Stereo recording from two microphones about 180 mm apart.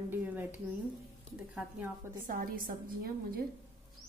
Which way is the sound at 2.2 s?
50° right (ahead or behind).